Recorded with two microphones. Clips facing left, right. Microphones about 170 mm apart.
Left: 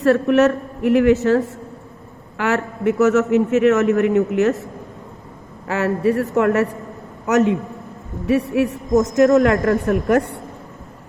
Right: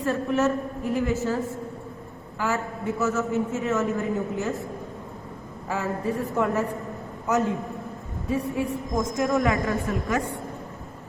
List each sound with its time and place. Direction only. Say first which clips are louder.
0.0 s a man's voice: left 9 dB; 75° left (ahead or behind)
5.6 s a man's voice: left 9 dB; 75° left (ahead or behind)